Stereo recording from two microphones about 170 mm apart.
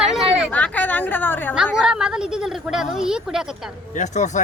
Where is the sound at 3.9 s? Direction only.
45° left (ahead or behind).